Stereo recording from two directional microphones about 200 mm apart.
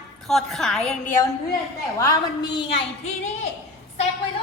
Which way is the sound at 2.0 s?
20° left (ahead or behind).